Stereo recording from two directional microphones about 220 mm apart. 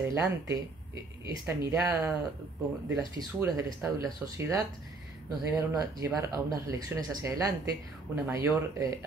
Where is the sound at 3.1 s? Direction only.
10° right (ahead or behind).